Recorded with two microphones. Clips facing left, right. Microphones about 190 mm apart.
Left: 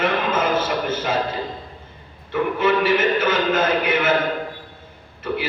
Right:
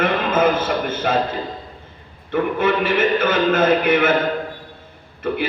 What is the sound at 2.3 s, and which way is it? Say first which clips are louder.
A man's voice: right 1 dB; 55° right (ahead or behind).